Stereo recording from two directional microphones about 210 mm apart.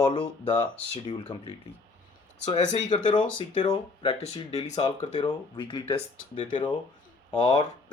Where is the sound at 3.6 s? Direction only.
25° left (ahead or behind).